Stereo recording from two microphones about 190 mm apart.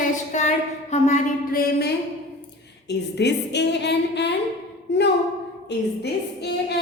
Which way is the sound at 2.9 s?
65° left (ahead or behind).